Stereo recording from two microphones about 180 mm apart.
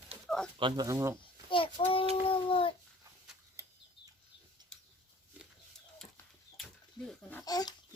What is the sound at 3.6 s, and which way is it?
Bird flight, 15° right (ahead or behind).